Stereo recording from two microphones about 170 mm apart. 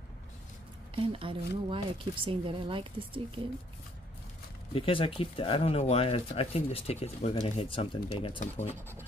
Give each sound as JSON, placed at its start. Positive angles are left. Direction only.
{"t": 0.9, "sound": "speech", "side_deg": -30}
{"t": 4.7, "sound": "speech", "side_deg": 30}